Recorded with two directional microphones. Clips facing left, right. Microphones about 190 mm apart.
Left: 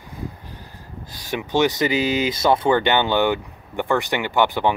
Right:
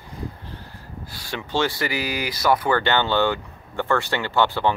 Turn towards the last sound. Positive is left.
turn(degrees=15)  # may be behind; listen again after turning